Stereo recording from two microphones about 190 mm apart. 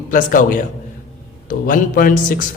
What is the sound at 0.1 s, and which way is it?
A man's voice, 45° left (ahead or behind).